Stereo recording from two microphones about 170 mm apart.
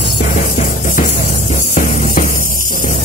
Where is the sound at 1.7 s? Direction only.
50° left (ahead or behind).